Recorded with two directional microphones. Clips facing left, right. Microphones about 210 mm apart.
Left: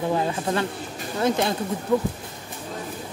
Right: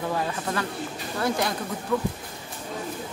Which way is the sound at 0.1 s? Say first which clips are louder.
Left 4 dB; 25° left (ahead or behind).